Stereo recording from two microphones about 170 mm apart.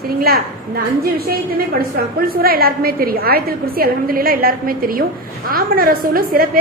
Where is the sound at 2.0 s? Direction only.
60° right (ahead or behind).